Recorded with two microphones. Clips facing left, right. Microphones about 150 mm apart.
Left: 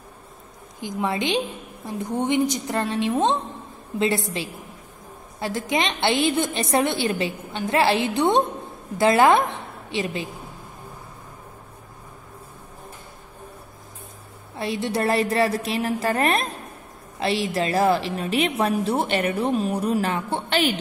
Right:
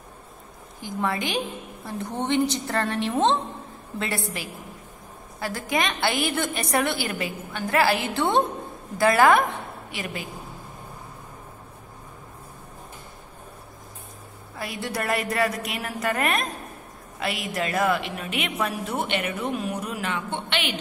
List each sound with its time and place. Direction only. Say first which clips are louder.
0.7 s a woman's voice: left 2 dB; 20° left (ahead or behind)
5.4 s a woman's voice: left 2 dB; 20° left (ahead or behind)
14.6 s a woman's voice: left 6 dB; 25° left (ahead or behind)